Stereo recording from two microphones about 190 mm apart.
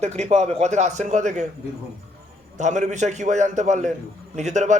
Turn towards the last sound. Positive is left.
turn(degrees=-40)  # may be behind; listen again after turning